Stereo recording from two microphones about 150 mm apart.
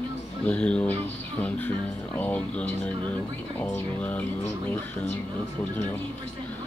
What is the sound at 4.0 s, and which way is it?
Speech, 10° left (ahead or behind).